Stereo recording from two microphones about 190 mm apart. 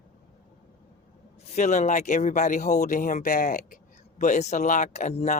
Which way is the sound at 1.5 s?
40° left (ahead or behind).